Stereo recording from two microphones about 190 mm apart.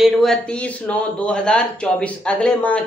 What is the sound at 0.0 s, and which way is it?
Speech, 5° left (ahead or behind).